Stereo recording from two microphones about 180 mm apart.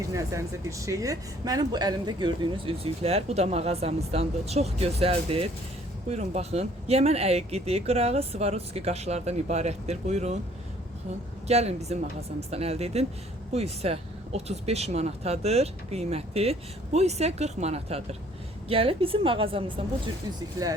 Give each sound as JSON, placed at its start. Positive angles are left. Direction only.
{"t": 0.1, "sound": "speech", "side_deg": -15}
{"t": 11.4, "sound": "speech", "side_deg": -35}